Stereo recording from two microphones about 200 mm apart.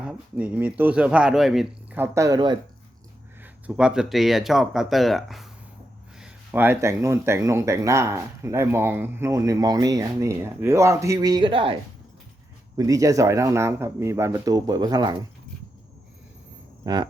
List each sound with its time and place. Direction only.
0.0 s speech: 5° right (ahead or behind)
3.4 s speech: 5° right (ahead or behind); by 15.2 s 20° right (ahead or behind)
16.8 s speech: 20° right (ahead or behind)